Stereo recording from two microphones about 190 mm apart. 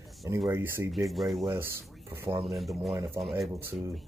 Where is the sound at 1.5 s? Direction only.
10° right (ahead or behind).